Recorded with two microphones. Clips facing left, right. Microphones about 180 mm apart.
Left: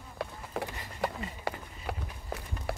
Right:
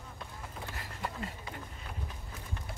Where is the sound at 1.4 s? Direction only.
75° left (ahead or behind).